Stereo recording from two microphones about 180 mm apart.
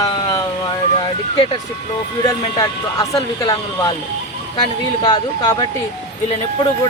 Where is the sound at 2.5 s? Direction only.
20° left (ahead or behind).